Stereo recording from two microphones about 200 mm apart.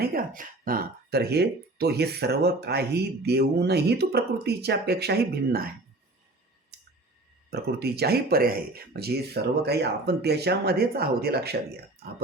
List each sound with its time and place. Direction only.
0.0 s speech: 45° right (ahead or behind)
7.5 s speech: 50° right (ahead or behind)